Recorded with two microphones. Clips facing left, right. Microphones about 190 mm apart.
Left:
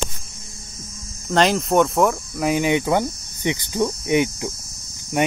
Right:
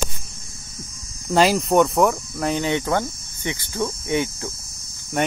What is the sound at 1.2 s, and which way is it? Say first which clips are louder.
Speech: right 1 dB; 5° right (ahead or behind).